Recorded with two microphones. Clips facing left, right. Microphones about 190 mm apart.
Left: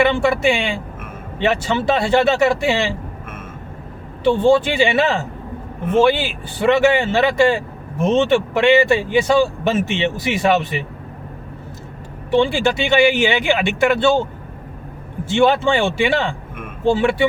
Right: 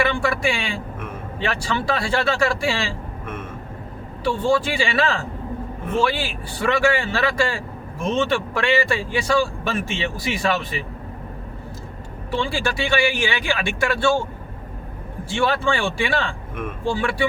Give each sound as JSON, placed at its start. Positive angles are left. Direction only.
{"t": 0.0, "sound": "a man's voice", "side_deg": 25}
{"t": 4.2, "sound": "a man's voice", "side_deg": 20}
{"t": 12.3, "sound": "a man's voice", "side_deg": 20}
{"t": 15.2, "sound": "a man's voice", "side_deg": 20}